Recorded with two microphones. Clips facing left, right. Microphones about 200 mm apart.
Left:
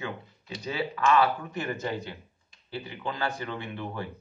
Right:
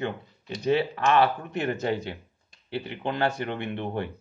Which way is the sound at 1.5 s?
65° right (ahead or behind).